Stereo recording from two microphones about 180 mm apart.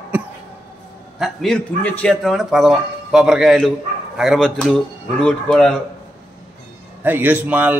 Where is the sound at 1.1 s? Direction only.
Centre (ahead or behind).